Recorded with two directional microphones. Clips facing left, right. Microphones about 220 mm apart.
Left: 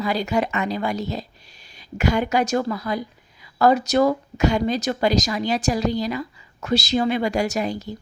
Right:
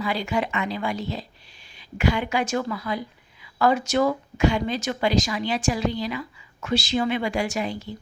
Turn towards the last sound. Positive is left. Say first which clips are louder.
# left 3 dB
turn(degrees=40)  # may be behind; listen again after turning